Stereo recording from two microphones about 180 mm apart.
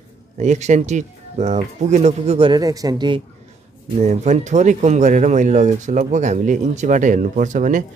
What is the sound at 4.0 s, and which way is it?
Speech, 40° right (ahead or behind).